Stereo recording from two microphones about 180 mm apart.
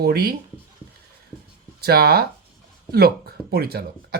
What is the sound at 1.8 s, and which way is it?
Speech, 60° right (ahead or behind).